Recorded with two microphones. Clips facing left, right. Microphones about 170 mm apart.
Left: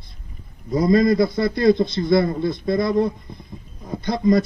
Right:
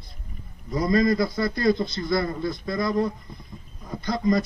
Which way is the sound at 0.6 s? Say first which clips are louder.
Left 5 dB; 25° left (ahead or behind).